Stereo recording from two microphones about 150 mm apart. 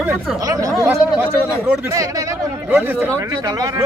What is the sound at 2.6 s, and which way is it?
Speech, 10° right (ahead or behind).